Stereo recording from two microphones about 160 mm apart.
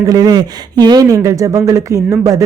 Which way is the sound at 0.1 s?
25° right (ahead or behind).